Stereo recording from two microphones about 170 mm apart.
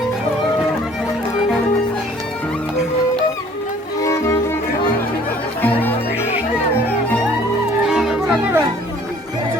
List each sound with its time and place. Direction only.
4.0 s music: 20° left (ahead or behind)
5.6 s music: 10° left (ahead or behind)
7.9 s music: 5° right (ahead or behind)